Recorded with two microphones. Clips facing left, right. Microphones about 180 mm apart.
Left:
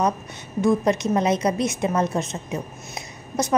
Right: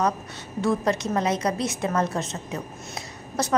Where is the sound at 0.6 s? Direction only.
15° left (ahead or behind).